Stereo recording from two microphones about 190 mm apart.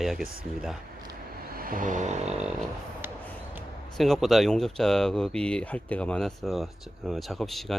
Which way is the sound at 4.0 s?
Centre (ahead or behind).